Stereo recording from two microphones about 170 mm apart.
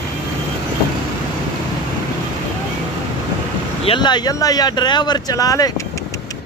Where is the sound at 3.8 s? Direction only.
30° left (ahead or behind).